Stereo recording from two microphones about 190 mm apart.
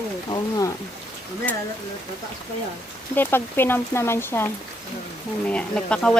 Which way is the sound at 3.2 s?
10° left (ahead or behind).